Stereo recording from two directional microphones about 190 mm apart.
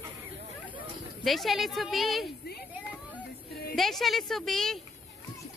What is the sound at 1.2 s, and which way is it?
A woman's voice, centre (ahead or behind).